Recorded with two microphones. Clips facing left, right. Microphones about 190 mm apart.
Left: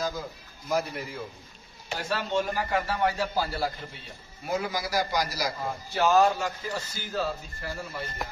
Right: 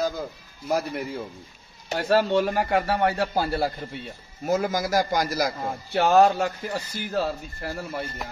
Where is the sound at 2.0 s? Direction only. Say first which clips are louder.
Right 8 dB; 60° right (ahead or behind).